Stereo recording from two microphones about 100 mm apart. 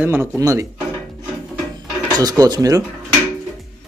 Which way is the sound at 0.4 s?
35° right (ahead or behind).